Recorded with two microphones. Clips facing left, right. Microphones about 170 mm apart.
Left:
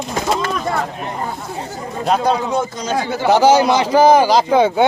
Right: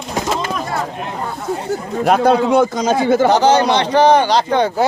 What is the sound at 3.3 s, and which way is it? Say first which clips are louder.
A man's voice: left 1 dB; 10° left (ahead or behind).